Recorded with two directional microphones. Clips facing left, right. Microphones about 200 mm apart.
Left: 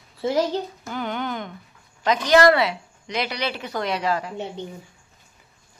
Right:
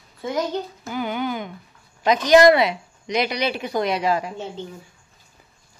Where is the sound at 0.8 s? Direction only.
5° right (ahead or behind).